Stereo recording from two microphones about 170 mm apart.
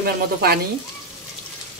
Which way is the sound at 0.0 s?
70° right (ahead or behind).